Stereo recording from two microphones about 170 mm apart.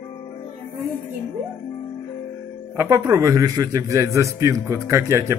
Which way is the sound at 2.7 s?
15° right (ahead or behind).